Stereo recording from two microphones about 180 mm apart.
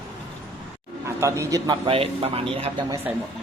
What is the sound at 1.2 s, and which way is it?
A man's voice, 15° right (ahead or behind).